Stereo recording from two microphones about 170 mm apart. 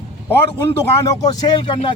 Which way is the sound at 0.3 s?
15° left (ahead or behind).